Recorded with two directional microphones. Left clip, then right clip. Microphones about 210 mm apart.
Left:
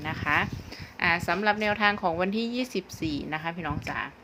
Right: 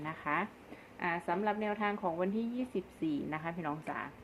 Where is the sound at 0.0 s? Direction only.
20° left (ahead or behind).